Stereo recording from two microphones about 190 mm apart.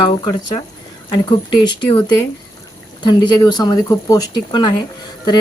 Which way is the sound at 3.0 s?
25° left (ahead or behind).